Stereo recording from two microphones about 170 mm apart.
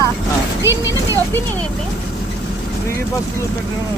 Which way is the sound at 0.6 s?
15° right (ahead or behind).